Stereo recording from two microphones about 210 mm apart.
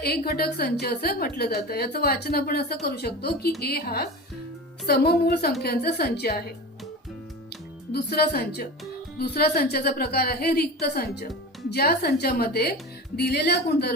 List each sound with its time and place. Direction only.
0.0 s a woman's voice: 50° left (ahead or behind)
7.9 s a woman's voice: 50° left (ahead or behind)